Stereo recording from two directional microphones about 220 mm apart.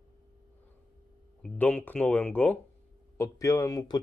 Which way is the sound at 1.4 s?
5° left (ahead or behind).